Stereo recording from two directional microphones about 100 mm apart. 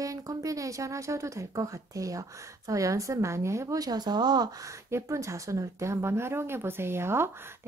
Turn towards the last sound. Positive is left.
turn(degrees=-25)  # may be behind; listen again after turning